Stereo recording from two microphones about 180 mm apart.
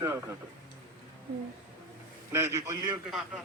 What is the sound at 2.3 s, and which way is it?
Speech, 15° right (ahead or behind).